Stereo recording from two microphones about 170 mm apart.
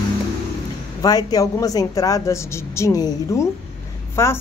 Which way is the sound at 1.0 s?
20° left (ahead or behind).